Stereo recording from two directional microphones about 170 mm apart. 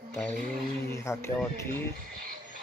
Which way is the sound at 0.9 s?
15° left (ahead or behind).